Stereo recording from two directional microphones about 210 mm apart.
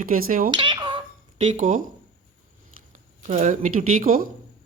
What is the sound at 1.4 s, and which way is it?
Speech, 35° right (ahead or behind).